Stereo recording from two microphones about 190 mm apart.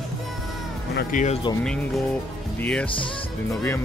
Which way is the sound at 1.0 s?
45° left (ahead or behind).